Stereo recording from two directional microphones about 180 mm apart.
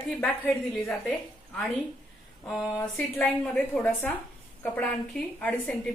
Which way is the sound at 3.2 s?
5° left (ahead or behind).